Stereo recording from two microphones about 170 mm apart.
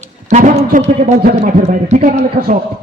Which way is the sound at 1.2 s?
60° right (ahead or behind).